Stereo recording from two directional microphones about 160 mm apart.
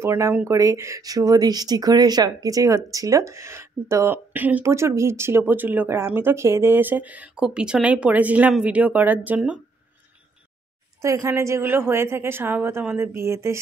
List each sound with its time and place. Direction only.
0.0 s speech: 15° right (ahead or behind)
11.0 s speech: 20° right (ahead or behind)